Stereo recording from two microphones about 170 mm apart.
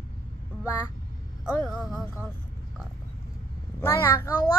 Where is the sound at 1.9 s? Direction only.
15° left (ahead or behind).